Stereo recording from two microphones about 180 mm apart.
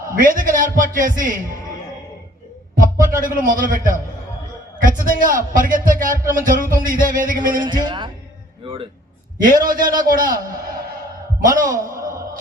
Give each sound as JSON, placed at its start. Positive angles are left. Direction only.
{"t": 0.2, "sound": "a man's voice", "side_deg": -50}
{"t": 2.8, "sound": "a man's voice", "side_deg": -50}
{"t": 7.5, "sound": "a man's voice", "side_deg": -25}
{"t": 9.4, "sound": "a man's voice", "side_deg": -50}
{"t": 11.9, "sound": "wail", "side_deg": -15}